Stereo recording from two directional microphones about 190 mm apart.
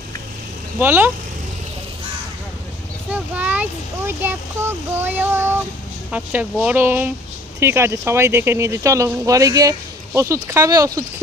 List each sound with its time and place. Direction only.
0.7 s speech: 10° right (ahead or behind)
3.1 s speech: 10° right (ahead or behind)